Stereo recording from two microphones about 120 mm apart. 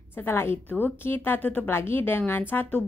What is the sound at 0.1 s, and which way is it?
A woman's voice, 20° left (ahead or behind).